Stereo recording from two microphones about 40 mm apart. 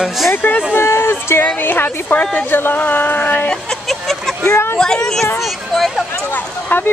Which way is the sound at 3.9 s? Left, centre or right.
Centre.